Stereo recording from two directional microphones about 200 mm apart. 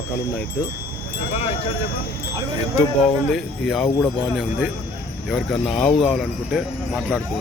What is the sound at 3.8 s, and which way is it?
Speech, 15° left (ahead or behind).